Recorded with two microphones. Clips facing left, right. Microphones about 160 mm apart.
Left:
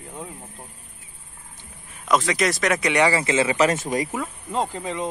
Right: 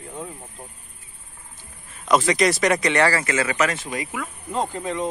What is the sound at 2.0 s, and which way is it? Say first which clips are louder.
Speech: right 2 dB; centre (ahead or behind).